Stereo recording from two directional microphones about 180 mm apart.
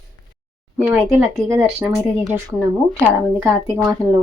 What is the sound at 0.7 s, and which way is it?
Speech, 10° right (ahead or behind).